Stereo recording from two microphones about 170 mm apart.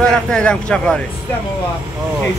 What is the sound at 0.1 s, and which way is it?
Speech, 5° left (ahead or behind).